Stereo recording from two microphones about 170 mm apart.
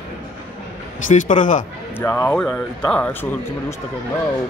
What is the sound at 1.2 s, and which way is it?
Speech, 50° left (ahead or behind).